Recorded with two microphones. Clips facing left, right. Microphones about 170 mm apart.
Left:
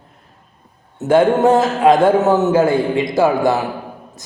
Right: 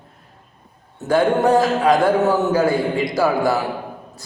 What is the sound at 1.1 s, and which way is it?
A man's voice, 25° left (ahead or behind).